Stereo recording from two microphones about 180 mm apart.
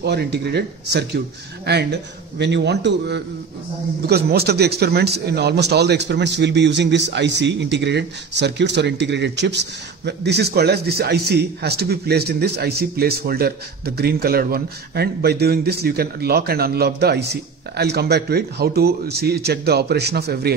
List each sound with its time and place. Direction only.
0.0 s a man's voice: 70° right (ahead or behind)